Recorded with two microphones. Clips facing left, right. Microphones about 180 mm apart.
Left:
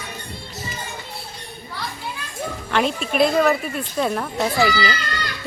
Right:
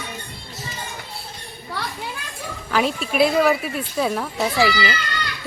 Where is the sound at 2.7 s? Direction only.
5° right (ahead or behind).